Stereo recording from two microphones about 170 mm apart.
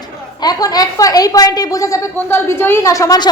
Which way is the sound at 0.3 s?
25° left (ahead or behind).